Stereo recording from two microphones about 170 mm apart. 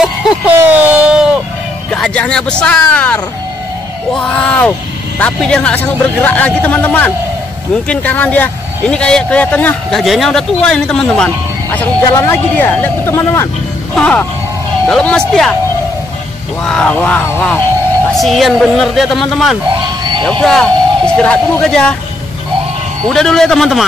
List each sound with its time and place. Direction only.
0.7 s a sound: 10° right (ahead or behind)
1.9 s a man's voice: 5° left (ahead or behind)
16.6 s a man's voice: 5° left (ahead or behind)
19.7 s a sound: 30° right (ahead or behind)
20.2 s speech: 5° left (ahead or behind)
23.0 s a woman's voice: 5° left (ahead or behind)